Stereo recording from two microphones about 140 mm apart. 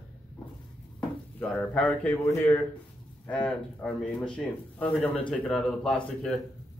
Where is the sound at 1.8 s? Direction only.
10° left (ahead or behind).